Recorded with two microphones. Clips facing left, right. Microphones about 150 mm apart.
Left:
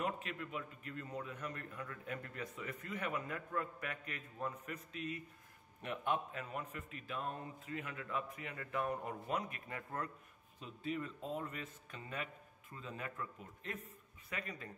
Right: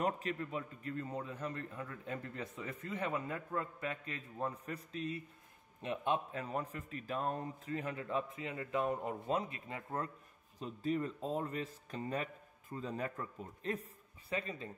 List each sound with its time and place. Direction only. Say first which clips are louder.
0.0 s a man's voice: right 4 dB; 35° right (ahead or behind)
10.6 s a man's voice: right 6 dB; 40° right (ahead or behind)